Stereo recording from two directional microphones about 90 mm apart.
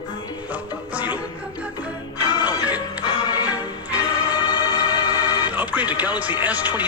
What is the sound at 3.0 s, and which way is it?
Music, 45° left (ahead or behind).